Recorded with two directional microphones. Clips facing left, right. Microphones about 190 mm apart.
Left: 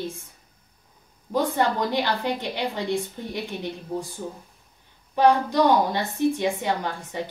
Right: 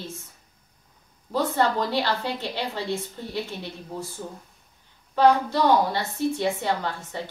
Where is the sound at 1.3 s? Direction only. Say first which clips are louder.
Even; 15° left (ahead or behind).